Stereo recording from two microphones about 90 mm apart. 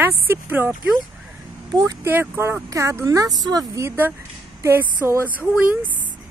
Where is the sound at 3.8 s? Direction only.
20° right (ahead or behind).